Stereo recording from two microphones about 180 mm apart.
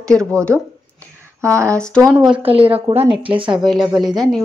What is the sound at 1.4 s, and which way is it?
Speech, 15° right (ahead or behind).